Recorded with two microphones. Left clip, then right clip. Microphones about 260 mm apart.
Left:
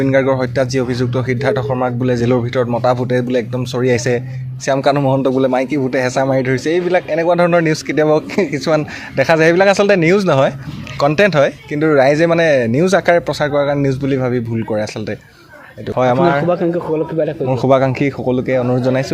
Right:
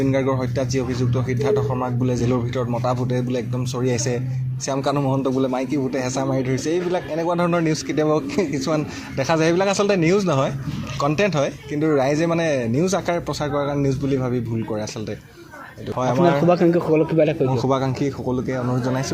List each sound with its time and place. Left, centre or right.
0.0 s a man's voice: left
16.0 s a man's voice: left
16.5 s speech: centre
17.5 s a man's voice: left